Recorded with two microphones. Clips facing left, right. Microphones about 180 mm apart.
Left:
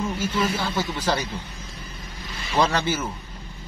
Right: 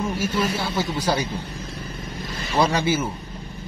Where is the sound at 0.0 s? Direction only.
10° right (ahead or behind).